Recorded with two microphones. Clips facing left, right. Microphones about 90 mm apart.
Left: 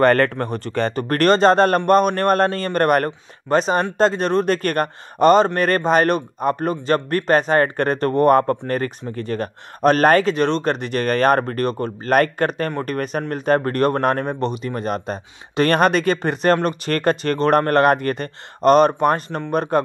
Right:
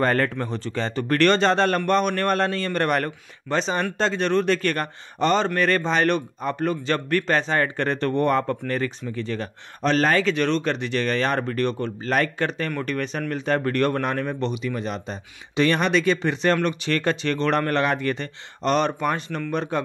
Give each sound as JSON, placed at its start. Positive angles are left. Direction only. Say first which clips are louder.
{"t": 0.0, "sound": "speech", "louder": "left 6 dB", "side_deg": 65}